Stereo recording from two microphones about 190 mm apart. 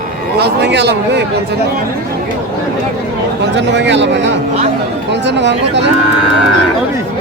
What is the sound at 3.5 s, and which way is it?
A man's voice, 65° right (ahead or behind).